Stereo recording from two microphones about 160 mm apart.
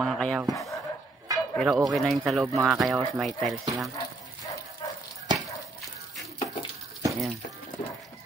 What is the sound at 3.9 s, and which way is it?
Dog, 20° left (ahead or behind).